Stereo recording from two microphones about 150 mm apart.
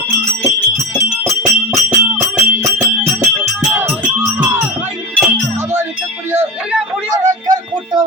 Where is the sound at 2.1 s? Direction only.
15° right (ahead or behind).